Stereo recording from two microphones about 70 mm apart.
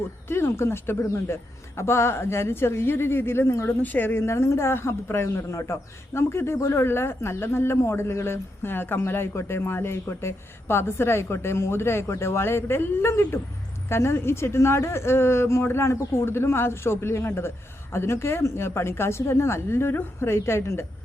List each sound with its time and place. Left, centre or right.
0.3 s a woman's voice: left
3.8 s a woman's voice: left